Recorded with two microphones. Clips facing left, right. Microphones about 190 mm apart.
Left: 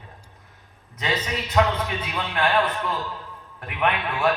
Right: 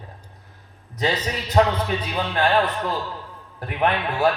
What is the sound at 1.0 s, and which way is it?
A man's voice, 35° right (ahead or behind).